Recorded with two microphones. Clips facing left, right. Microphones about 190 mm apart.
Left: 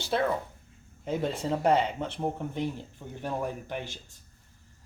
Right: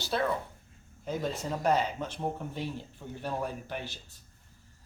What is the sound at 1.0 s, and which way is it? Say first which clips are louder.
Speech: left 3 dB; 25° left (ahead or behind).